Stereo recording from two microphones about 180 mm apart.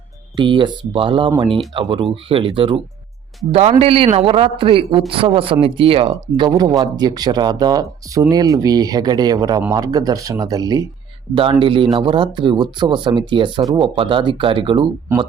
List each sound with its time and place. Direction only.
0.3 s a man's voice: 25° right (ahead or behind)